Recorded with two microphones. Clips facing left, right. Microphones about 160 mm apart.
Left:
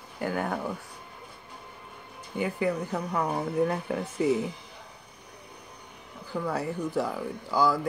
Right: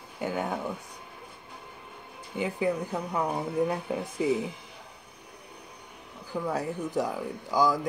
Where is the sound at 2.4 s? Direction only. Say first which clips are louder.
Even; 10° right (ahead or behind).